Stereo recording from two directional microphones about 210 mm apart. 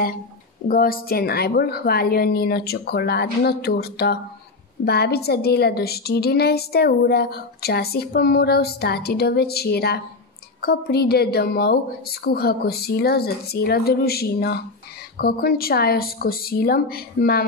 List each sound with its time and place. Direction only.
0.7 s a woman's voice: 45° left (ahead or behind)